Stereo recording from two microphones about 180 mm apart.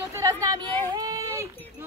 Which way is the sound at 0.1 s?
20° right (ahead or behind).